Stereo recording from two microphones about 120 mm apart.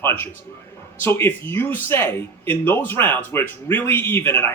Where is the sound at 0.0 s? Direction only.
15° left (ahead or behind).